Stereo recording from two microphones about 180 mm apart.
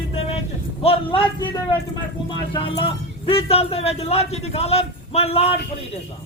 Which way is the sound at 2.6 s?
30° left (ahead or behind).